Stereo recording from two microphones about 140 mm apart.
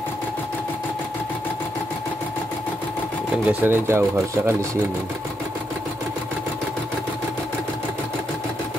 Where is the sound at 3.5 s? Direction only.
15° right (ahead or behind).